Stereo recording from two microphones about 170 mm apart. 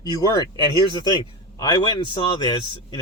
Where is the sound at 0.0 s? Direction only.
20° left (ahead or behind).